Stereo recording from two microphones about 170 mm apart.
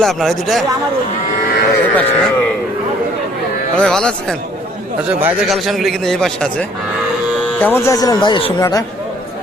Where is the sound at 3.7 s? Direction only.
5° left (ahead or behind).